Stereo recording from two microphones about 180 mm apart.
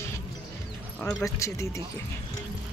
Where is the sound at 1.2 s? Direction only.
15° left (ahead or behind).